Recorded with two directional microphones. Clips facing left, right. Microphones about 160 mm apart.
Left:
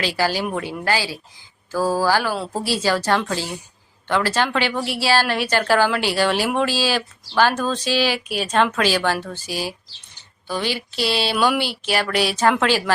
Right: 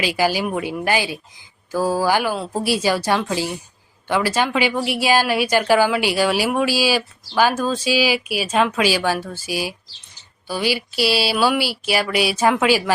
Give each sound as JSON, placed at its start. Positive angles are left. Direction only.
{"t": 0.0, "sound": "a woman's voice", "side_deg": -10}
{"t": 2.3, "sound": "speech", "side_deg": 0}
{"t": 2.6, "sound": "a woman's voice", "side_deg": -10}